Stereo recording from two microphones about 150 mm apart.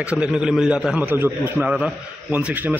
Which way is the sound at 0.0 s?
5° right (ahead or behind).